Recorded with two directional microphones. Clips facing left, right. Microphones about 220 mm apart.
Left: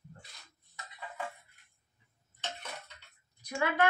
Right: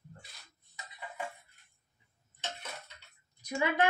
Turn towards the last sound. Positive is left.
turn(degrees=-15)  # may be behind; listen again after turning